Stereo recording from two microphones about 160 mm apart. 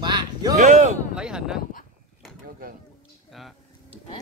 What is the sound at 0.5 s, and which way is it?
Speech, 50° right (ahead or behind).